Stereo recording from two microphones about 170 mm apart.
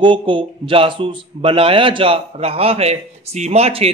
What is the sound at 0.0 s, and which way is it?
A man's voice, 30° right (ahead or behind).